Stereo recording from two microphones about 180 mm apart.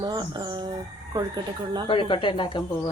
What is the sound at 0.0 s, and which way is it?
Speech, 25° right (ahead or behind).